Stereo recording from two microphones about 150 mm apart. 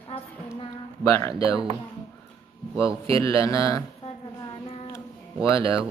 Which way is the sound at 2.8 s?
35° right (ahead or behind).